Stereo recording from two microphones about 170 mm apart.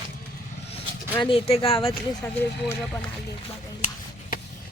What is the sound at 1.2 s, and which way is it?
Speech, 35° left (ahead or behind).